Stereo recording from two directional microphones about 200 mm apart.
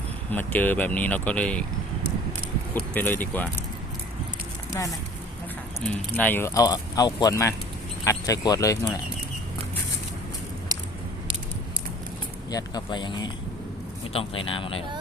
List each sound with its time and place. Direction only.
0.3 s speech: 10° left (ahead or behind)
2.7 s speech: 10° left (ahead or behind)
4.7 s speech: 15° left (ahead or behind)
12.5 s speech: 20° left (ahead or behind)